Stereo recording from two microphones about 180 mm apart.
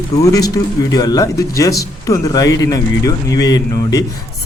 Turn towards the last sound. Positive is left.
turn(degrees=20)  # may be behind; listen again after turning